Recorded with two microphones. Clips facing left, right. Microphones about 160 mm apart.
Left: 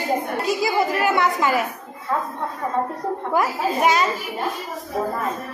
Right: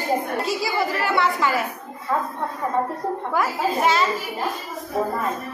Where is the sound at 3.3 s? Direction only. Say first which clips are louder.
Left 2 dB; 15° left (ahead or behind).